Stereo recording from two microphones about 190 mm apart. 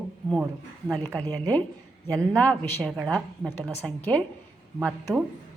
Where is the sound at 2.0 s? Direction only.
15° right (ahead or behind).